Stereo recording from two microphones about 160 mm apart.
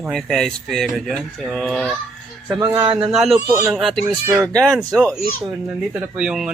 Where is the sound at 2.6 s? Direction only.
20° right (ahead or behind).